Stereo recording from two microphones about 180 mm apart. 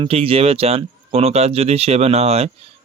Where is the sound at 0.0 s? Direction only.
30° right (ahead or behind).